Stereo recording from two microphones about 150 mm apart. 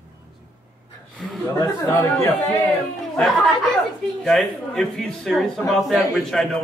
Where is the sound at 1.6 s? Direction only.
20° left (ahead or behind).